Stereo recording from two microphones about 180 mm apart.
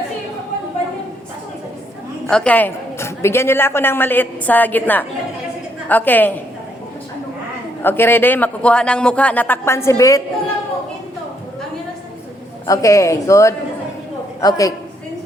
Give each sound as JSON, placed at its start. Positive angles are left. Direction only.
{"t": 2.2, "sound": "a man's voice", "side_deg": 5}
{"t": 7.8, "sound": "a man's voice", "side_deg": 10}
{"t": 12.6, "sound": "a man's voice", "side_deg": 20}